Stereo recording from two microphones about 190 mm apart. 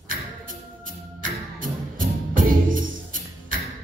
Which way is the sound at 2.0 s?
45° right (ahead or behind).